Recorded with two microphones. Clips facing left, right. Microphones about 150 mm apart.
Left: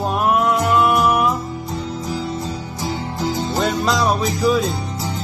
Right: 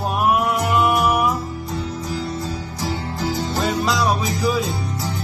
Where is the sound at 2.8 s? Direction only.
20° left (ahead or behind).